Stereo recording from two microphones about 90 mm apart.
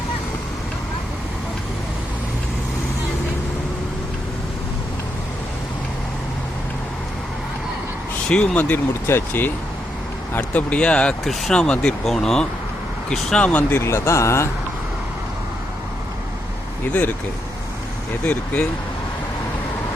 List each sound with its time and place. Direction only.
8.3 s speech: 10° left (ahead or behind)
8.9 s speech: 25° left (ahead or behind)
13.8 s speech: 30° left (ahead or behind)
16.9 s speech: 15° left (ahead or behind)